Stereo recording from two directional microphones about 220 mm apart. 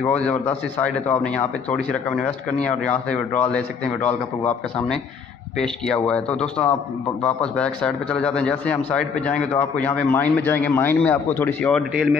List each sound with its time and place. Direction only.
0.1 s a man's voice: 5° left (ahead or behind)
9.3 s a man's voice: 30° left (ahead or behind)
9.8 s speech: 10° left (ahead or behind)